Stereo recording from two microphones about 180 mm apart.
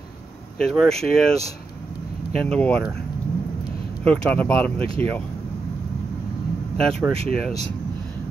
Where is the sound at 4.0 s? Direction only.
10° left (ahead or behind).